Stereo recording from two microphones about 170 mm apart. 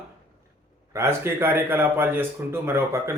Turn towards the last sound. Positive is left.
turn(degrees=-15)  # may be behind; listen again after turning